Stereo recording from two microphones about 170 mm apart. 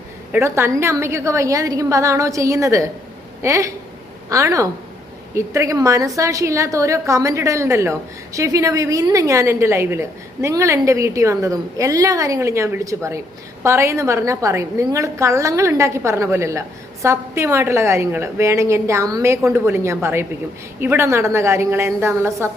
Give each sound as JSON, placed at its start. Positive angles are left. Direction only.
{"t": 0.3, "sound": "a woman's voice", "side_deg": -15}